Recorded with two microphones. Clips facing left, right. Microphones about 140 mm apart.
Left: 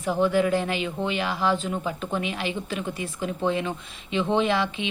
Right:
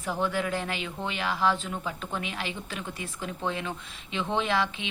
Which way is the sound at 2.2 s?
5° left (ahead or behind).